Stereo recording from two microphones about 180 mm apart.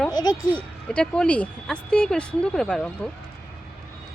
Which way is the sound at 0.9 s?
5° left (ahead or behind).